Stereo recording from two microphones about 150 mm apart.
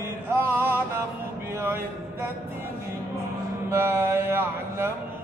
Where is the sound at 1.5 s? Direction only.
15° right (ahead or behind).